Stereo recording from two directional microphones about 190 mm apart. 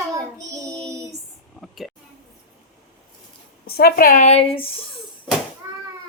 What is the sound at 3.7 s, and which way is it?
Speech, 55° left (ahead or behind).